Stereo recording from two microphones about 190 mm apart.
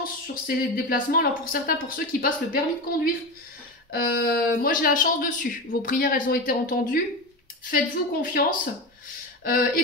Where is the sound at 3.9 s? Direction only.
50° left (ahead or behind).